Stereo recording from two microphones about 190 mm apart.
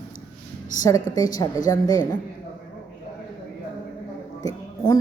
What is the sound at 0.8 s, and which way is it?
A woman's voice, 15° left (ahead or behind).